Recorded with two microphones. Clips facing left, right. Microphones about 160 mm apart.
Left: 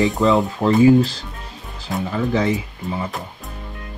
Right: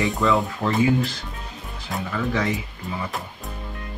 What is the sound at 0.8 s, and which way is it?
Speech, 30° left (ahead or behind).